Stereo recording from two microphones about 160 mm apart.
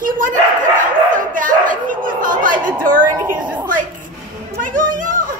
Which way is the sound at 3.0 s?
15° right (ahead or behind).